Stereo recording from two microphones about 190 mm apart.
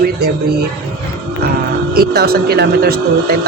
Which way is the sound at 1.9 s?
55° right (ahead or behind).